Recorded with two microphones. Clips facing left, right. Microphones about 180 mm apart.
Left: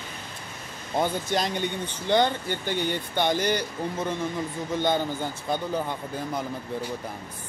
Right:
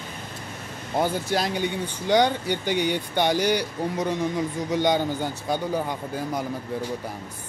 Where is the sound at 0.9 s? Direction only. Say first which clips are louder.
Right 2 dB; 5° right (ahead or behind).